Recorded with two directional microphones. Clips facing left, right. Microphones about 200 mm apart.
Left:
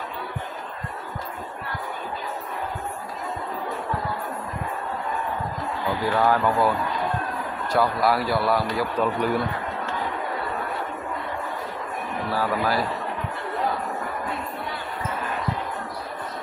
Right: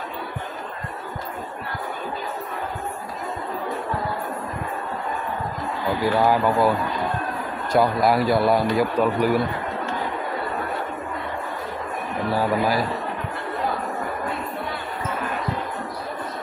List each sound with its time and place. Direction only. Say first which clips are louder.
6.1 s a man's voice: right 1 dB; 10° right (ahead or behind)
7.7 s a man's voice: right 3 dB; 15° right (ahead or behind)
12.4 s a man's voice: right 2 dB; 15° right (ahead or behind)